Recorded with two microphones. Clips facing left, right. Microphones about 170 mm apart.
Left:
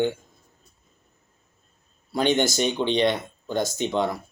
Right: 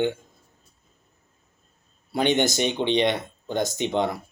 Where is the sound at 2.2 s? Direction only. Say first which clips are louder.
Even; 20° right (ahead or behind).